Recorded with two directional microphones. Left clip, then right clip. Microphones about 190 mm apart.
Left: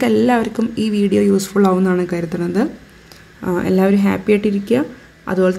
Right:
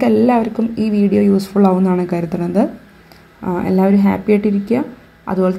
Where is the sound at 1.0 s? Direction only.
15° left (ahead or behind).